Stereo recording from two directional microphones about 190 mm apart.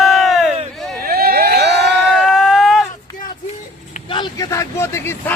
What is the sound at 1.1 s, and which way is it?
Crowd, 55° right (ahead or behind).